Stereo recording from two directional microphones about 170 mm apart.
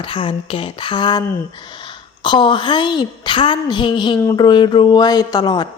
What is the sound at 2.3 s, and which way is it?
A woman's voice, 25° left (ahead or behind).